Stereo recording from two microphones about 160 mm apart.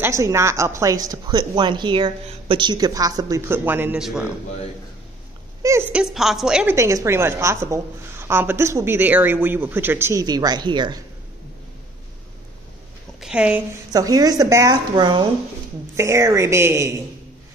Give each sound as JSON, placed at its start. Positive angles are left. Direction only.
{"t": 0.0, "sound": "a woman's voice", "side_deg": -15}
{"t": 5.6, "sound": "a woman's voice", "side_deg": -15}
{"t": 6.7, "sound": "a woman's voice", "side_deg": -20}
{"t": 13.2, "sound": "a woman's voice", "side_deg": -5}
{"t": 13.9, "sound": "a woman's voice", "side_deg": -25}